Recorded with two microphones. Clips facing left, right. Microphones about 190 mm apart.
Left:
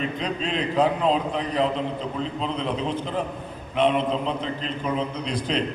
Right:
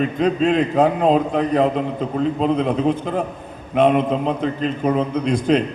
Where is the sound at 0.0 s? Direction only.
50° right (ahead or behind).